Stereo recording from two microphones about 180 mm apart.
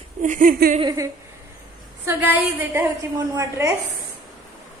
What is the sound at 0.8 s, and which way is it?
Giggle, 20° right (ahead or behind).